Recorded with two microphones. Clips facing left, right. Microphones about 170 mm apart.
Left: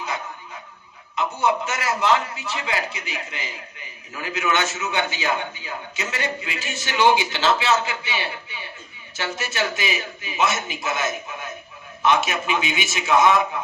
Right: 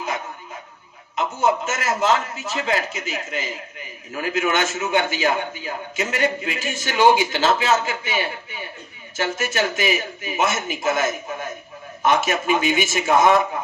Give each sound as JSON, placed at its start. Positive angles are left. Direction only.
{"t": 1.4, "sound": "a man's voice", "side_deg": -45}